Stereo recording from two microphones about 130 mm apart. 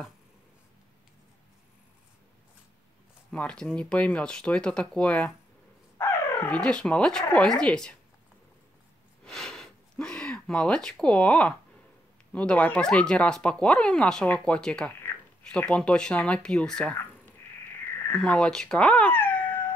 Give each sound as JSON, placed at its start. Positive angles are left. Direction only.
{"t": 3.3, "sound": "speech", "side_deg": 5}
{"t": 5.9, "sound": "a sound", "side_deg": 15}
{"t": 6.6, "sound": "speech", "side_deg": 5}
{"t": 9.2, "sound": "speech", "side_deg": 5}
{"t": 18.1, "sound": "cat", "side_deg": 5}